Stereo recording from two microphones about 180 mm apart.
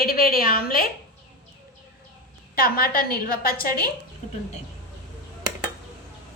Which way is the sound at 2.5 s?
55° left (ahead or behind).